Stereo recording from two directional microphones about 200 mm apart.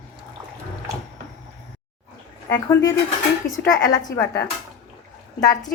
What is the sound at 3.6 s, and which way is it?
Speech, 20° left (ahead or behind).